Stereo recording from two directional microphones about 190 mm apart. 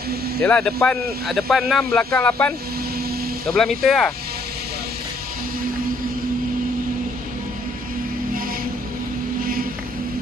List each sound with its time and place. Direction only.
0.4 s a man's voice: 5° left (ahead or behind)
9.4 s vehicle: 50° right (ahead or behind)